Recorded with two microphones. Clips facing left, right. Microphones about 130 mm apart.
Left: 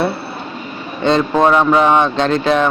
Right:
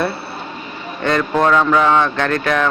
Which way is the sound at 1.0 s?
20° left (ahead or behind).